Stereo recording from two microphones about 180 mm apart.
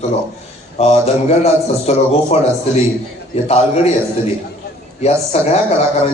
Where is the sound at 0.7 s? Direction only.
35° left (ahead or behind).